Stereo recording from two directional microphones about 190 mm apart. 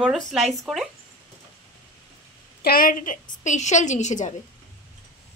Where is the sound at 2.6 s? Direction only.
50° left (ahead or behind).